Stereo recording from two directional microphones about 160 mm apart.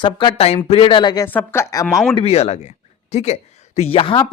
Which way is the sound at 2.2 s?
40° left (ahead or behind).